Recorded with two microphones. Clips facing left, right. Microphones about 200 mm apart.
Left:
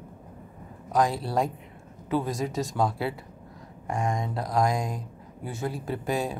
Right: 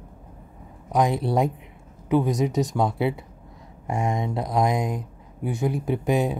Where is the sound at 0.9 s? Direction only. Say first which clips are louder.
Right 3 dB; 20° right (ahead or behind).